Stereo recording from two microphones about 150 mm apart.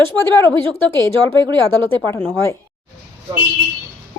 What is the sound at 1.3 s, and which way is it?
Speech, 30° right (ahead or behind).